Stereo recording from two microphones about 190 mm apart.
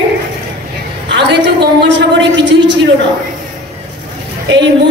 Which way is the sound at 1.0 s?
65° right (ahead or behind).